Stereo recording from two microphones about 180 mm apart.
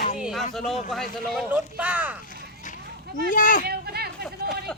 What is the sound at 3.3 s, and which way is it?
Speech, 45° left (ahead or behind).